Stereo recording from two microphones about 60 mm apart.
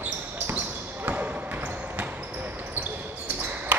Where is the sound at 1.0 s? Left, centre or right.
Right.